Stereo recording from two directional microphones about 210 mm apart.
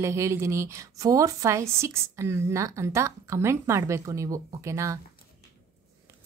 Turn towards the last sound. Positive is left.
turn(degrees=-15)  # may be behind; listen again after turning